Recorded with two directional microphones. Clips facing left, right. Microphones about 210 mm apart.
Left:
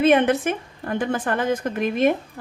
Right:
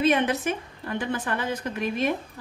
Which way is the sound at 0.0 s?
55° left (ahead or behind).